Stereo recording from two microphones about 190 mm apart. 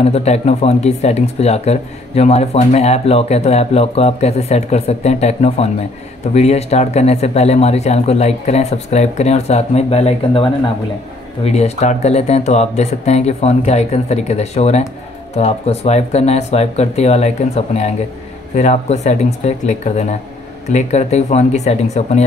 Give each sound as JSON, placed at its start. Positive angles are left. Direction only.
{"t": 0.0, "sound": "speech", "side_deg": 35}